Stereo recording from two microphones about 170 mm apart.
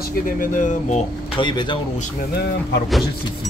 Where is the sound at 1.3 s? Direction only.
30° left (ahead or behind).